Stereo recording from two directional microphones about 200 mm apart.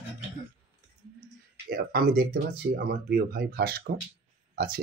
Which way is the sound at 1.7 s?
50° right (ahead or behind).